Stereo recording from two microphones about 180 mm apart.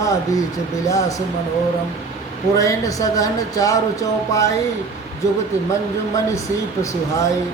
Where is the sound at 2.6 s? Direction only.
20° left (ahead or behind).